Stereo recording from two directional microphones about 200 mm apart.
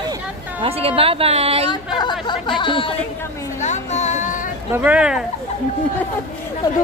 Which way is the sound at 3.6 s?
35° left (ahead or behind).